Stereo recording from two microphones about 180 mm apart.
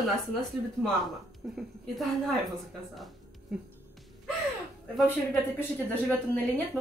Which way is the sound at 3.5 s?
5° right (ahead or behind).